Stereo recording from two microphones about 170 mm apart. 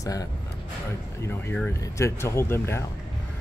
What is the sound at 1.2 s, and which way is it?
Speech, 10° left (ahead or behind).